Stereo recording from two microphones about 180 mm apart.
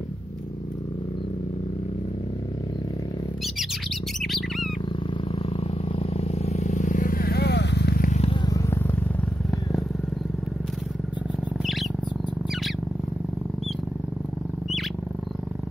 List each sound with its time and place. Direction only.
4.2 s bird: centre (ahead or behind)
5.3 s vehicle: 35° left (ahead or behind); by 8.2 s 55° left (ahead or behind)
8.2 s purr: 30° left (ahead or behind)
9.5 s vehicle: centre (ahead or behind)